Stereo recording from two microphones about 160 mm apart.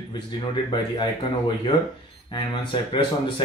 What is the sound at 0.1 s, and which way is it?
Speech, 25° left (ahead or behind).